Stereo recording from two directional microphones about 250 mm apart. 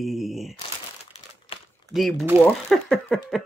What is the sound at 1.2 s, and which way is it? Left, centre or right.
Crumpling, left.